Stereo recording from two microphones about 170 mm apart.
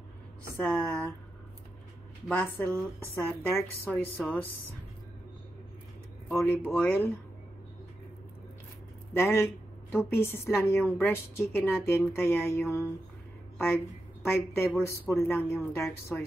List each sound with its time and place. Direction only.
0.6 s a woman's voice: 10° left (ahead or behind)
2.2 s a woman's voice: 10° left (ahead or behind)
6.2 s a woman's voice: 10° left (ahead or behind)
9.1 s a woman's voice: 15° left (ahead or behind)
14.2 s a woman's voice: 15° left (ahead or behind)